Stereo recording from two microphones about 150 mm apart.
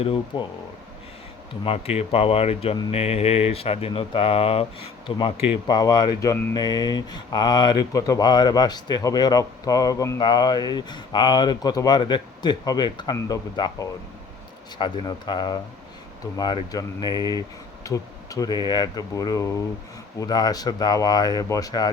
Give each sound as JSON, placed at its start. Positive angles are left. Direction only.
{"t": 0.0, "sound": "speech", "side_deg": 35}
{"t": 1.6, "sound": "a man's voice", "side_deg": 40}